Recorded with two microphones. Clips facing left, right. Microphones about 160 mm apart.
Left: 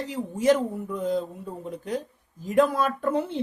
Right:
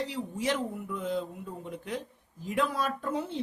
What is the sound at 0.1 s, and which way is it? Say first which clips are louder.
Speech: left 9 dB; 45° left (ahead or behind).